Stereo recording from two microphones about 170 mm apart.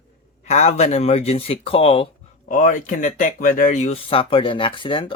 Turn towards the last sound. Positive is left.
turn(degrees=30)  # may be behind; listen again after turning